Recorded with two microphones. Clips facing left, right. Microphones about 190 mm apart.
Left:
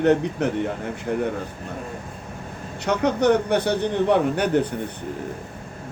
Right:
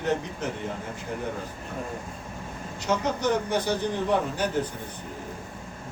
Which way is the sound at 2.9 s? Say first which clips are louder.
Left 6 dB; 65° left (ahead or behind).